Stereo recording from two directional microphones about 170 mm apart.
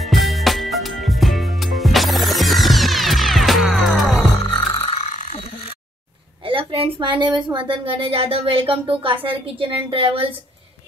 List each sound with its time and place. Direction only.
0.0 s music: centre (ahead or behind)
4.8 s a sound: 35° left (ahead or behind)
6.4 s a woman's voice: 30° right (ahead or behind)